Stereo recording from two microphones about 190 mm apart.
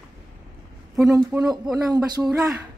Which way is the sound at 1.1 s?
20° right (ahead or behind).